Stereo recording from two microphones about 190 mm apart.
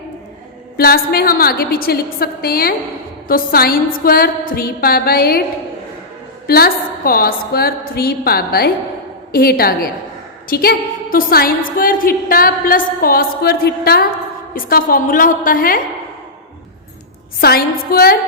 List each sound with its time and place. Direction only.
0.8 s a woman's voice: 50° left (ahead or behind)
6.5 s a woman's voice: 50° left (ahead or behind)
17.4 s a woman's voice: 55° left (ahead or behind)